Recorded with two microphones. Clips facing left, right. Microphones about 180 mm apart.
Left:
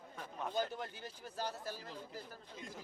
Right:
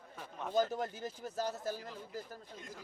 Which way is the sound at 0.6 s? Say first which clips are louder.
Right 8 dB; 40° right (ahead or behind).